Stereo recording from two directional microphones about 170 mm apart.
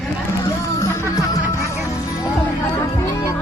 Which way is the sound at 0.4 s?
15° left (ahead or behind).